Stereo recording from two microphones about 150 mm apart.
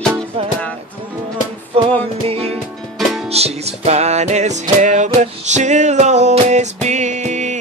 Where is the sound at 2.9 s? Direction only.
Centre (ahead or behind).